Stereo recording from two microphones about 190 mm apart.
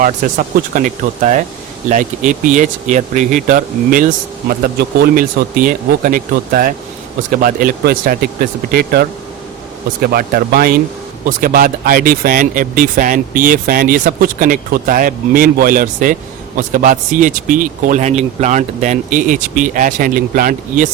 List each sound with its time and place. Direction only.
0.0 s speech: 45° right (ahead or behind)